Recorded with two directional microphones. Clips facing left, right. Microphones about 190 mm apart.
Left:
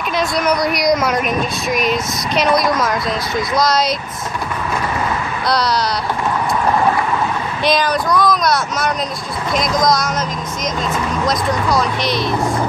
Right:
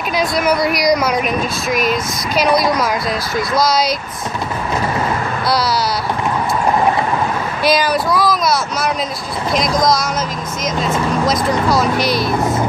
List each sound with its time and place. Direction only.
0.1 s speech: centre (ahead or behind)
7.6 s speech: 5° right (ahead or behind)